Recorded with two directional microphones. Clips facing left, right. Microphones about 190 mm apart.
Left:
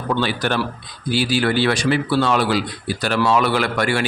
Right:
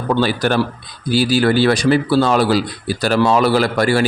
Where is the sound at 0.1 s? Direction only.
40° right (ahead or behind).